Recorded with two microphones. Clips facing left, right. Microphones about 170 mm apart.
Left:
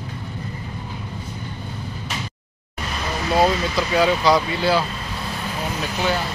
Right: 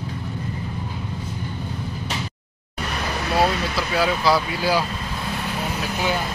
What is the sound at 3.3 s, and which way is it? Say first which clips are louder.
Speech: left 3 dB; 5° right (ahead or behind).